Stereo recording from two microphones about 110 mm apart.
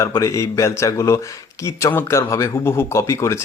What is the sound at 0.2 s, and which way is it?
Speech, 30° left (ahead or behind).